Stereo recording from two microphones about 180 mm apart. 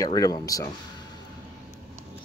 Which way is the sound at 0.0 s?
20° left (ahead or behind).